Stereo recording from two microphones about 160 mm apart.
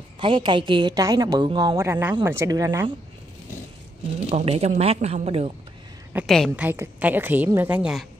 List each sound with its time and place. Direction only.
0.2 s a woman's voice: 30° right (ahead or behind)
1.8 s a woman's voice: 15° right (ahead or behind)
4.3 s a woman's voice: 40° right (ahead or behind)
6.2 s a woman's voice: 5° left (ahead or behind)
6.5 s a woman's voice: 10° right (ahead or behind)